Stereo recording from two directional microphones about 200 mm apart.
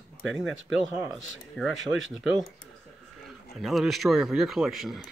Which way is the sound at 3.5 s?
Centre (ahead or behind).